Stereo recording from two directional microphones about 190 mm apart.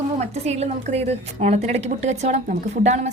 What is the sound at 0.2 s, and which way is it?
A woman's voice, 35° right (ahead or behind).